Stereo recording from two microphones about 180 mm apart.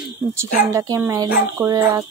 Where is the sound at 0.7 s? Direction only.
20° right (ahead or behind).